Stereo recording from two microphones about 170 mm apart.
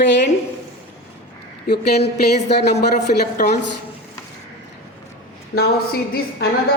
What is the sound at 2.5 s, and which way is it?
A woman's voice, 75° left (ahead or behind).